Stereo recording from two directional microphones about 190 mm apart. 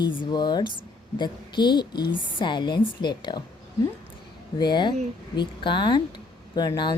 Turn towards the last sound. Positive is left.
turn(degrees=20)  # may be behind; listen again after turning